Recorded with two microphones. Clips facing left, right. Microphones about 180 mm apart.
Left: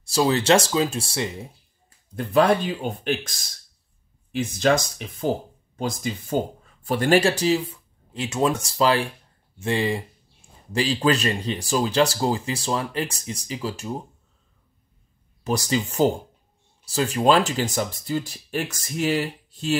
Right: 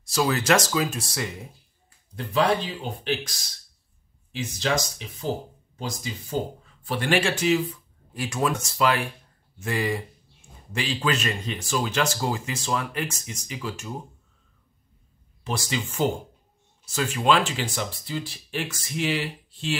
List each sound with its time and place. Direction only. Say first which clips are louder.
0.0 s speech: left 3 dB; 30° left (ahead or behind)
2.1 s speech: left 4 dB; 50° left (ahead or behind); by 13.9 s 30° left (ahead or behind)
15.4 s speech: left 6 dB; 40° left (ahead or behind)